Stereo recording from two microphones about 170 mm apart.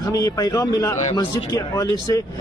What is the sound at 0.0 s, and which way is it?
A man's voice, 20° left (ahead or behind).